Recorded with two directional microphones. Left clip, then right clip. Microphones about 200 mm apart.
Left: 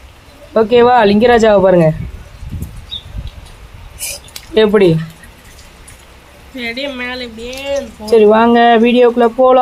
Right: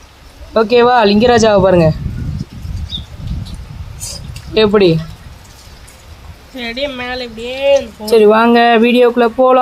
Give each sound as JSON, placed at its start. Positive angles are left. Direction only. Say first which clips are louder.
{"t": 0.5, "sound": "speech", "louder": "left 1 dB", "side_deg": 0}
{"t": 4.5, "sound": "speech", "louder": "even", "side_deg": 0}
{"t": 6.6, "sound": "speech", "louder": "right 1 dB", "side_deg": -40}
{"t": 8.1, "sound": "speech", "louder": "even", "side_deg": 0}